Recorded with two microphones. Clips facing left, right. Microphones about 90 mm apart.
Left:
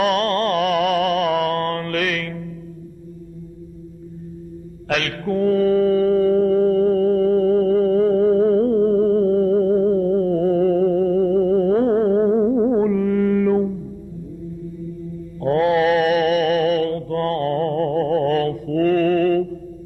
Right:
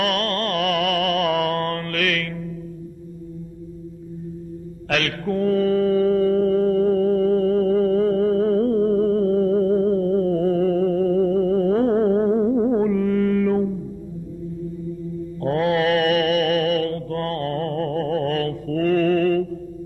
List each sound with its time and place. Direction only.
0.0 s music: 20° left (ahead or behind); by 1.9 s 5° left (ahead or behind)
1.9 s mantra: 15° left (ahead or behind)
4.9 s mantra: centre (ahead or behind)
15.4 s mantra: 5° left (ahead or behind)